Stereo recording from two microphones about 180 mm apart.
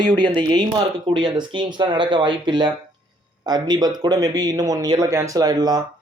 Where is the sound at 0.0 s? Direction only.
25° right (ahead or behind).